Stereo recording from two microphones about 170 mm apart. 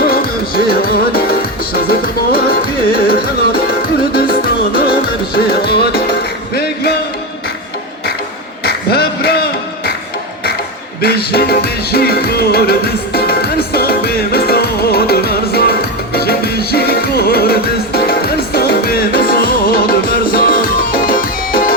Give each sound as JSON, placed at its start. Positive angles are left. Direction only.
{"t": 0.0, "sound": "music", "side_deg": 60}
{"t": 4.1, "sound": "music", "side_deg": 60}
{"t": 8.6, "sound": "a sound", "side_deg": 65}
{"t": 11.0, "sound": "music", "side_deg": 65}